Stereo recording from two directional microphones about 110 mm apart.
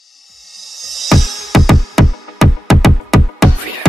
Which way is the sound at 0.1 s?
Centre (ahead or behind).